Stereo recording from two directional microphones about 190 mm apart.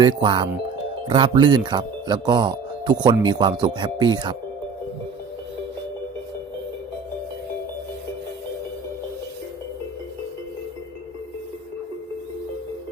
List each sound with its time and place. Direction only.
0.0 s speech: 25° right (ahead or behind)